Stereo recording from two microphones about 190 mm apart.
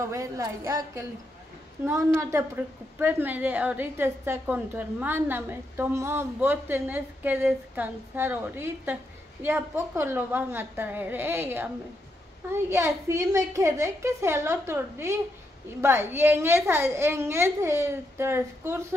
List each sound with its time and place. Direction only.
0.0 s a woman's voice: 15° right (ahead or behind)